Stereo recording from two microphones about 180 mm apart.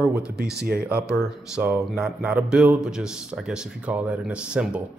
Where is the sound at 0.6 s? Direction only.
60° right (ahead or behind).